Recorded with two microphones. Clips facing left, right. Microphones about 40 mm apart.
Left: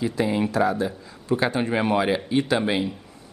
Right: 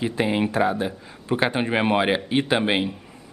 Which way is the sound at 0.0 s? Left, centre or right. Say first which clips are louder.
Right 1 dB; right.